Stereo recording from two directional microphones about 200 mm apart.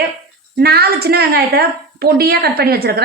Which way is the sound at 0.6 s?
50° right (ahead or behind).